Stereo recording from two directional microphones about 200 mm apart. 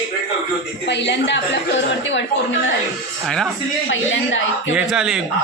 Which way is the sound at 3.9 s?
70° left (ahead or behind).